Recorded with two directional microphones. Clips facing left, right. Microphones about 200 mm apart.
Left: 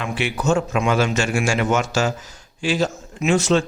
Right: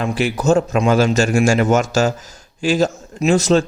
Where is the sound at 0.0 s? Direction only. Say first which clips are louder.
Right 5 dB; 40° right (ahead or behind).